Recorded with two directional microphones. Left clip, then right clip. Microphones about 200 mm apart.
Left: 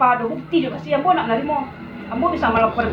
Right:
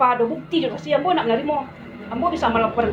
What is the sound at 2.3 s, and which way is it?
Speech, 55° right (ahead or behind).